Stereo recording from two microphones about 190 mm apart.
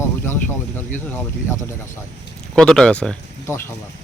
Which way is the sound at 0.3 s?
10° left (ahead or behind).